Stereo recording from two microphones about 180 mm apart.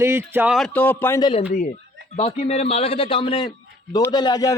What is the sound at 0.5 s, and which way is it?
Speech, 5° left (ahead or behind).